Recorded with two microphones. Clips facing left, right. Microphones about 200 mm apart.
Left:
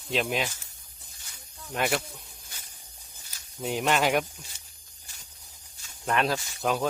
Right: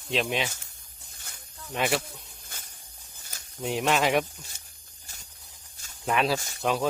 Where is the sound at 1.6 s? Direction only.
Centre (ahead or behind).